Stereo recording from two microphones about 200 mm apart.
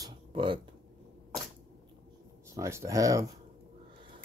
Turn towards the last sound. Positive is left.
turn(degrees=-15)  # may be behind; listen again after turning